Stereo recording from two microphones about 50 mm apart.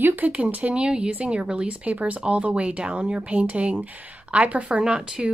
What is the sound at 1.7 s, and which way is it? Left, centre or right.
Speech, right.